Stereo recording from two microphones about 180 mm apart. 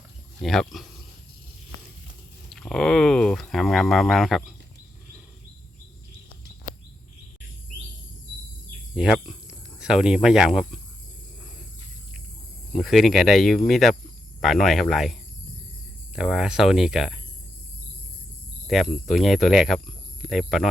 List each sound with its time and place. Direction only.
0.3 s speech: centre (ahead or behind)
2.5 s speech: centre (ahead or behind)
9.0 s speech: centre (ahead or behind)
12.7 s speech: centre (ahead or behind)
18.7 s speech: centre (ahead or behind)